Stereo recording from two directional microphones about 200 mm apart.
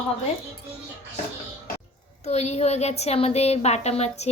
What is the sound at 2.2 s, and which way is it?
A woman's voice, 35° left (ahead or behind).